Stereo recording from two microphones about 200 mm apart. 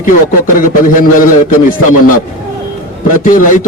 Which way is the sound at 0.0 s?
40° left (ahead or behind).